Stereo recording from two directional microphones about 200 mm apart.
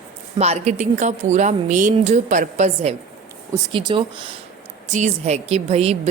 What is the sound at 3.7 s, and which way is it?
Speech, 25° right (ahead or behind).